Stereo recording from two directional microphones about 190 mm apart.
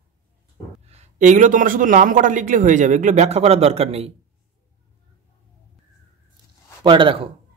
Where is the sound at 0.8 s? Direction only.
35° right (ahead or behind).